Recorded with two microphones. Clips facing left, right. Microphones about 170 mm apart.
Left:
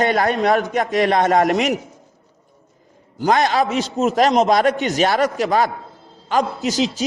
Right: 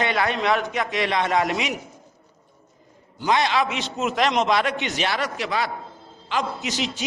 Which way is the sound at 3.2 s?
45° left (ahead or behind).